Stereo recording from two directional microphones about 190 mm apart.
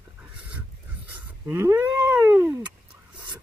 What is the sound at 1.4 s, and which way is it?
Cat, 10° right (ahead or behind).